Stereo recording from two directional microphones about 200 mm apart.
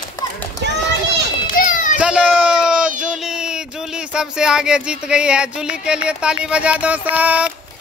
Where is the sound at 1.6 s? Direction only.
40° left (ahead or behind).